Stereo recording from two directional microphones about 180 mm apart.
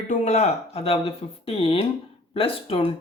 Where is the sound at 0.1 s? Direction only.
40° left (ahead or behind).